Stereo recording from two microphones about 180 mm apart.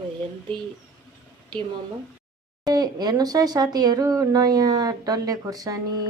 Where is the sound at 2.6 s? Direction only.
20° right (ahead or behind).